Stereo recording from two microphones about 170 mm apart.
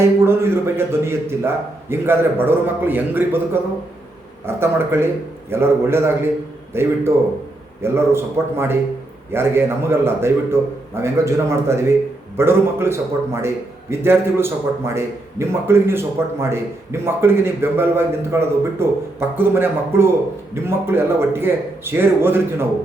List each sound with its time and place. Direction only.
0.0 s a man's voice: 15° right (ahead or behind)